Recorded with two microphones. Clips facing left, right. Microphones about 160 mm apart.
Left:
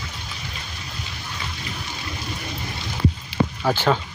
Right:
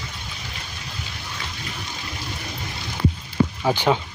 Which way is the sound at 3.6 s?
15° right (ahead or behind).